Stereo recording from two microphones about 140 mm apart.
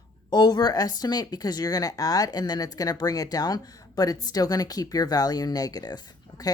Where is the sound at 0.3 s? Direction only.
30° left (ahead or behind).